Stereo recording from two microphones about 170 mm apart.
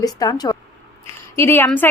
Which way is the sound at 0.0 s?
20° left (ahead or behind).